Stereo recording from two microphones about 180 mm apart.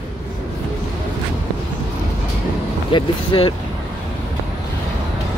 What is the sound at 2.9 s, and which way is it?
Vehicle, 25° left (ahead or behind).